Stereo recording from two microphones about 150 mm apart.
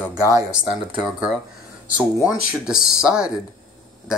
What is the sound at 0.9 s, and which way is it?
Speech, 5° right (ahead or behind).